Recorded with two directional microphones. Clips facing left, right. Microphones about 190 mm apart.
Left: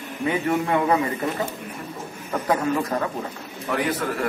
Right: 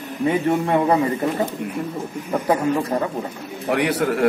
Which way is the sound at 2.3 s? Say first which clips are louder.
Right 3 dB; 15° right (ahead or behind).